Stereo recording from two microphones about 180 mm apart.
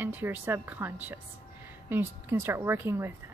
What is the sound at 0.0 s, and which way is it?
Speech, 10° right (ahead or behind).